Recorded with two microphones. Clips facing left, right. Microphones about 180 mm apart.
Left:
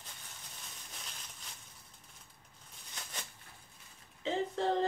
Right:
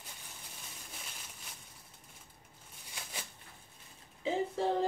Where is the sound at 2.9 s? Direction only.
10° right (ahead or behind).